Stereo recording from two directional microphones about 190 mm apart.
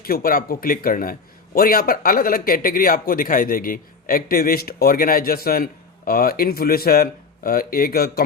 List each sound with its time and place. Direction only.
0.0 s speech: 50° left (ahead or behind)